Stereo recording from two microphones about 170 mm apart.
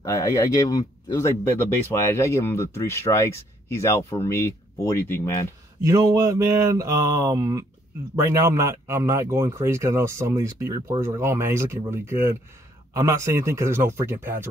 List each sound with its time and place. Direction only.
0.0 s speech: 15° left (ahead or behind)
5.8 s a sound: 20° right (ahead or behind)
8.2 s speech: 15° right (ahead or behind)